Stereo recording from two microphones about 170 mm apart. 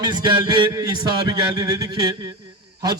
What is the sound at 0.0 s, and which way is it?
Music, 25° right (ahead or behind).